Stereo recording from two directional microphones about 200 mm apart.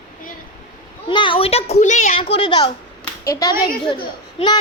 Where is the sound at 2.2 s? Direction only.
25° left (ahead or behind).